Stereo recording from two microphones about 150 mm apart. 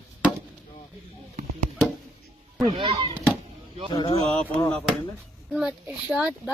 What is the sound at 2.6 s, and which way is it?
Speech, 30° right (ahead or behind).